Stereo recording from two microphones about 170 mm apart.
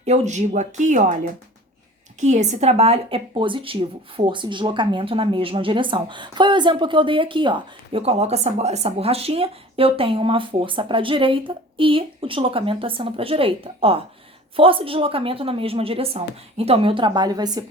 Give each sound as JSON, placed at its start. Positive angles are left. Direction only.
{"t": 0.0, "sound": "speech", "side_deg": -40}